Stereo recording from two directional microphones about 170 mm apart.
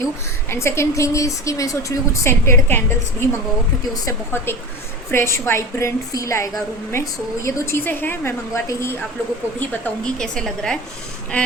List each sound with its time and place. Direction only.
0.5 s a woman's voice: 15° left (ahead or behind)